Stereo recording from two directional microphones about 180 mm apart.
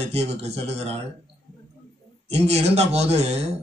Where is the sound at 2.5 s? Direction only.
35° right (ahead or behind).